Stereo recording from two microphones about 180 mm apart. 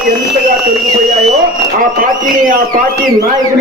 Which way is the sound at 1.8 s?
50° right (ahead or behind).